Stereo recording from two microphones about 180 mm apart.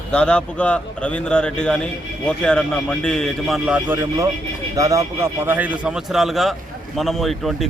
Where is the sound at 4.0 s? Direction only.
15° right (ahead or behind).